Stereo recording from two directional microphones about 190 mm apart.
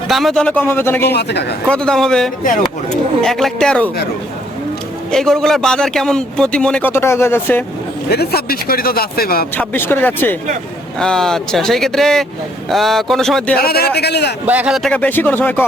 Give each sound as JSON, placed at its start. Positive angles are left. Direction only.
{"t": 0.1, "sound": "speech", "side_deg": 0}
{"t": 1.1, "sound": "a man's voice", "side_deg": 60}
{"t": 1.6, "sound": "a man's voice", "side_deg": 5}
{"t": 5.1, "sound": "a man's voice", "side_deg": 0}
{"t": 8.1, "sound": "speech", "side_deg": 55}
{"t": 9.6, "sound": "a man's voice", "side_deg": 10}
{"t": 13.6, "sound": "a man's voice", "side_deg": 55}
{"t": 14.4, "sound": "speech", "side_deg": -10}